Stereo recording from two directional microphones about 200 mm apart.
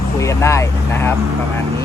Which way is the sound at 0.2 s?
15° left (ahead or behind).